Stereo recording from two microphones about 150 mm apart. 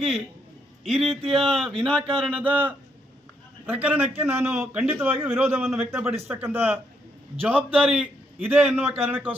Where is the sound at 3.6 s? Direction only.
10° right (ahead or behind).